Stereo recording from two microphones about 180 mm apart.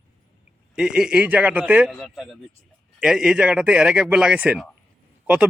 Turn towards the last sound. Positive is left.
turn(degrees=-5)  # may be behind; listen again after turning